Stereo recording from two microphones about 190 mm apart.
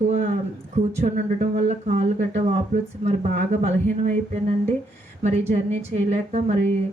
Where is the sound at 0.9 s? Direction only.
35° right (ahead or behind).